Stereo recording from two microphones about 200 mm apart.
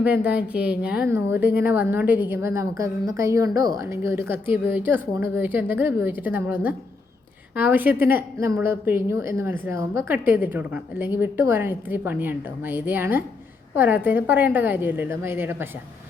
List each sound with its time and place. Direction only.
0.0 s a woman's voice: 5° right (ahead or behind)